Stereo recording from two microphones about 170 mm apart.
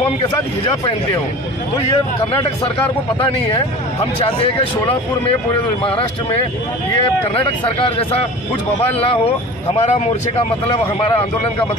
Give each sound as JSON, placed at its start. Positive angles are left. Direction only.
{"t": 2.1, "sound": "speech", "side_deg": 30}
{"t": 4.3, "sound": "speech", "side_deg": 35}
{"t": 9.0, "sound": "speech", "side_deg": 35}